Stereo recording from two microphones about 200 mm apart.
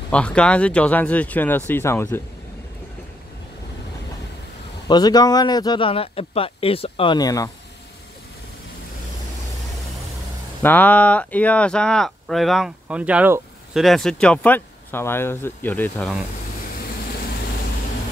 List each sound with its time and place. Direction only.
0.1 s speech: 5° left (ahead or behind)
4.8 s speech: 20° left (ahead or behind)
10.6 s speech: 10° left (ahead or behind)